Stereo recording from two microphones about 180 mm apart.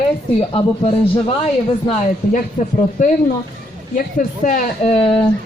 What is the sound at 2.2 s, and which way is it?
Speech, 35° left (ahead or behind).